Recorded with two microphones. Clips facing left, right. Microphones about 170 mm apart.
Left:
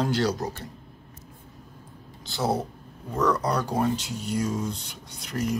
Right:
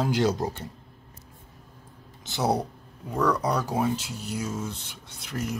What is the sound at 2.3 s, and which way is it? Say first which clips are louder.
Speech: right 1 dB; 20° right (ahead or behind).